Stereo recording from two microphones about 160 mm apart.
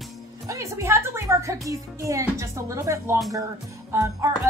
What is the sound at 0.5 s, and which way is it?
Speech, 20° right (ahead or behind).